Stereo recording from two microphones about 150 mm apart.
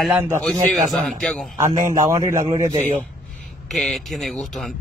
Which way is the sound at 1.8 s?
25° right (ahead or behind).